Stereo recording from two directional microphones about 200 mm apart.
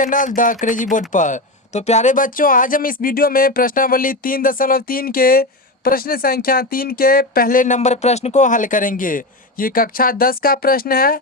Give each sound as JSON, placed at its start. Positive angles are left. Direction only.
{"t": 0.0, "sound": "speech", "side_deg": 40}